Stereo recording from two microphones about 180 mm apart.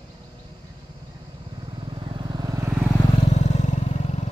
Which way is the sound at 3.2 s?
40° left (ahead or behind).